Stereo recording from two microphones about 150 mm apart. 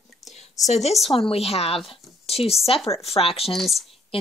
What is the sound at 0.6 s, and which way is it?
A woman's voice, 50° left (ahead or behind).